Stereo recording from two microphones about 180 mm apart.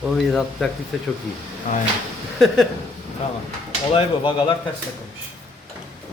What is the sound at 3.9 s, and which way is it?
Speech, 25° left (ahead or behind).